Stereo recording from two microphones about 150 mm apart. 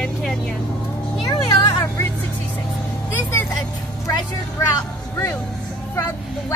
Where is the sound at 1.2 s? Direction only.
25° left (ahead or behind).